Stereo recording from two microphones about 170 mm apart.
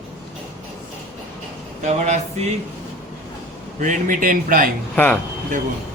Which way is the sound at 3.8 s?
50° right (ahead or behind).